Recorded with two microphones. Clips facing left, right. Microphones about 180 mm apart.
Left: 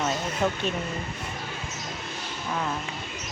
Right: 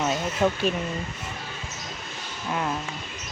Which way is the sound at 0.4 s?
5° left (ahead or behind).